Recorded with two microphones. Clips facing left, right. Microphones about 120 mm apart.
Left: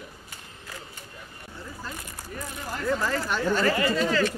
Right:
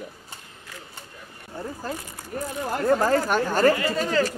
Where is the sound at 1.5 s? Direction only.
50° right (ahead or behind).